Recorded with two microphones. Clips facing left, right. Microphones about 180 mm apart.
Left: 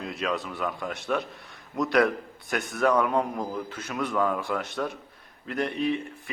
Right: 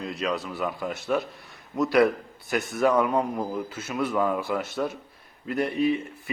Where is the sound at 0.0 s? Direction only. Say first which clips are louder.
Right 1 dB; centre (ahead or behind).